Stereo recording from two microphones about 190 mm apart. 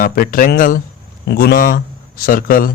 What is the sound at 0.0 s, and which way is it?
A man's voice, 45° left (ahead or behind).